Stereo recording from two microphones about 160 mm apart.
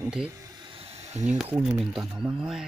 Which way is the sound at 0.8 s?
45° right (ahead or behind).